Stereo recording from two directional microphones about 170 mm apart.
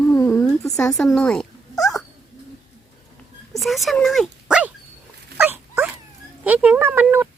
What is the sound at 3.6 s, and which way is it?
Dog, centre (ahead or behind).